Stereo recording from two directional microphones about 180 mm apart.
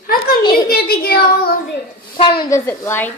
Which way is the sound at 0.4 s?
25° left (ahead or behind).